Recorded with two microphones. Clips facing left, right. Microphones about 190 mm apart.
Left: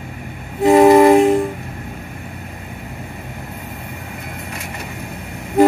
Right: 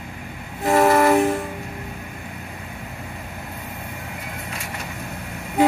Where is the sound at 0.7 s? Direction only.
20° left (ahead or behind).